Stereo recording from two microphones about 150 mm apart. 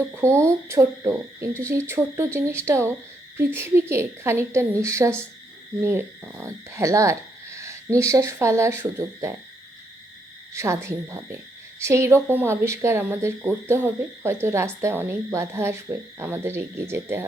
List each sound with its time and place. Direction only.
0.2 s a woman's voice: 20° right (ahead or behind)
10.5 s a woman's voice: 20° right (ahead or behind)